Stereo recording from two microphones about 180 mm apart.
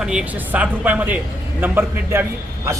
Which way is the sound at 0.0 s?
5° right (ahead or behind).